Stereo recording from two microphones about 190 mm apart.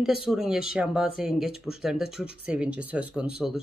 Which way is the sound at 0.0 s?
Centre (ahead or behind).